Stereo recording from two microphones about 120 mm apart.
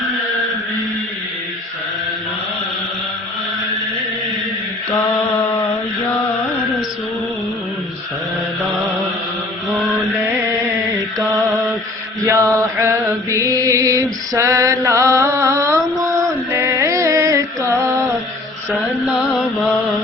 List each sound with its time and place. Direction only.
4.9 s mantra: 15° left (ahead or behind)
12.2 s mantra: 25° right (ahead or behind)
16.5 s music: 20° right (ahead or behind)
18.7 s mantra: centre (ahead or behind)